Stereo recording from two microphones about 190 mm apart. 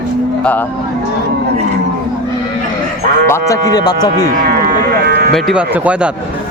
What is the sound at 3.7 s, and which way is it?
Speech, 20° left (ahead or behind).